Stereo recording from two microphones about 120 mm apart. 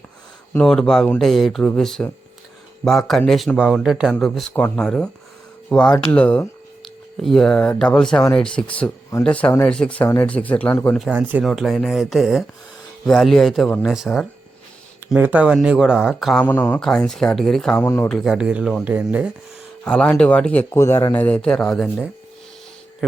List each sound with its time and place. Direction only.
0.6 s speech: 5° left (ahead or behind)
6.8 s speech: centre (ahead or behind)
11.1 s speech: 10° right (ahead or behind)
11.4 s speech: centre (ahead or behind)
15.1 s speech: 15° right (ahead or behind)
16.4 s speech: 15° left (ahead or behind)
16.8 s speech: 5° left (ahead or behind)
17.7 s speech: 20° left (ahead or behind)
18.1 s speech: 5° right (ahead or behind)
19.8 s speech: 5° left (ahead or behind)
20.7 s speech: 25° left (ahead or behind); by 22.0 s 5° left (ahead or behind)